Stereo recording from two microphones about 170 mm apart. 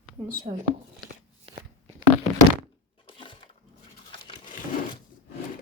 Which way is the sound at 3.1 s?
30° left (ahead or behind).